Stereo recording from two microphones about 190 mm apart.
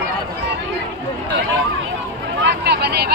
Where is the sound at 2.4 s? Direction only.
60° right (ahead or behind).